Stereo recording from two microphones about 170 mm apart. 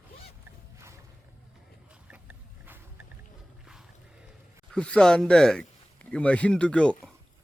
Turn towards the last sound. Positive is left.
turn(degrees=5)  # may be behind; listen again after turning